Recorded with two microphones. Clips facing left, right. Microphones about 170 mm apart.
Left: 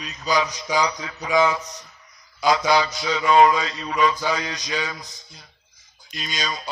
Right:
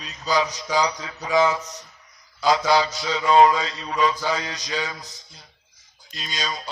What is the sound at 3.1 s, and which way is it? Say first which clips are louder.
Speech: even; 30° right (ahead or behind).